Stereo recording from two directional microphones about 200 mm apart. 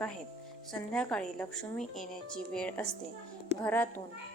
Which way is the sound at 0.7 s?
5° left (ahead or behind).